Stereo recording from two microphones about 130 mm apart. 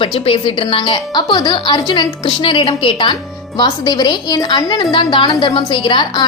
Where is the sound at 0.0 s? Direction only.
45° left (ahead or behind).